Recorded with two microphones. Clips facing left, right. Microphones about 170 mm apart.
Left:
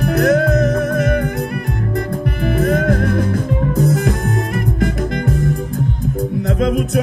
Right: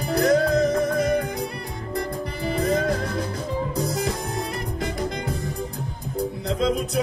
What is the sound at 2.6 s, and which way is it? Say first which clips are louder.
Music: left 6 dB; 60° left (ahead or behind).